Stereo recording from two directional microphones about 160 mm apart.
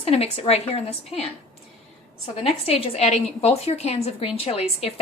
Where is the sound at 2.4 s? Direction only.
40° left (ahead or behind).